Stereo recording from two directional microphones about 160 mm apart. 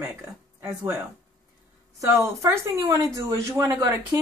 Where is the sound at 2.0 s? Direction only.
20° right (ahead or behind).